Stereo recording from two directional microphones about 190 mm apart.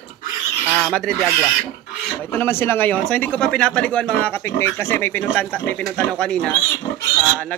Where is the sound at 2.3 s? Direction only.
10° left (ahead or behind).